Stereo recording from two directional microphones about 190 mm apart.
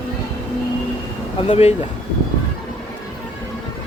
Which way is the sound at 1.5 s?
30° left (ahead or behind).